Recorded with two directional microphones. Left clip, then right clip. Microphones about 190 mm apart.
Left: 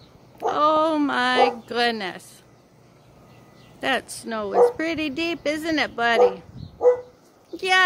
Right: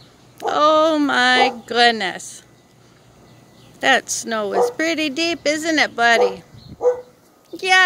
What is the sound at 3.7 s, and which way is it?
Speech, 5° right (ahead or behind).